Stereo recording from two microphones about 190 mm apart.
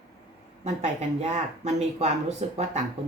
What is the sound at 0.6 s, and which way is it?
Speech, 35° right (ahead or behind).